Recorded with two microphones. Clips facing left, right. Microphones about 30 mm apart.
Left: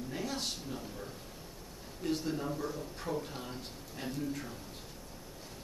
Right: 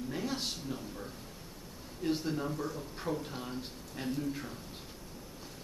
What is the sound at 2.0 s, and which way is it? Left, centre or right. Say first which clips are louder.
A man's voice: right 1 dB; centre.